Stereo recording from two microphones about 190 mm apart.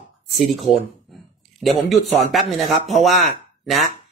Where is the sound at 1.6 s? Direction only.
Centre (ahead or behind).